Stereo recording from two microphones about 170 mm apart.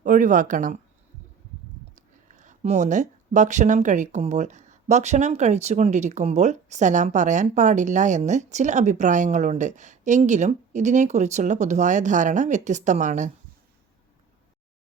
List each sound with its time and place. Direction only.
0.0 s speech: 50° right (ahead or behind)
2.3 s speech: 45° right (ahead or behind)